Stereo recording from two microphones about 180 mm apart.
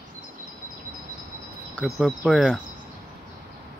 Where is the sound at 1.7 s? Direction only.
Centre (ahead or behind).